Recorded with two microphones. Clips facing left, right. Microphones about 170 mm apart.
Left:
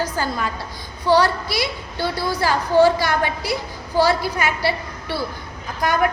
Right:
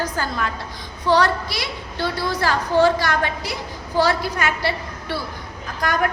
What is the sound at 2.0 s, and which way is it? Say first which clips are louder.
A woman's voice: left 1 dB; 10° left (ahead or behind).